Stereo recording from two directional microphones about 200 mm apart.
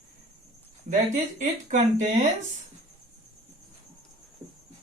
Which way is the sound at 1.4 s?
35° right (ahead or behind).